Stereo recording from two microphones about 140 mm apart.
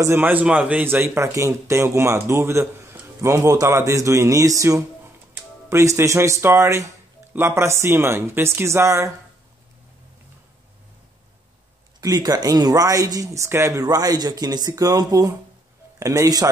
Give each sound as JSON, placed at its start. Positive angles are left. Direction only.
{"t": 0.0, "sound": "a man's voice", "side_deg": -15}
{"t": 12.0, "sound": "a man's voice", "side_deg": -25}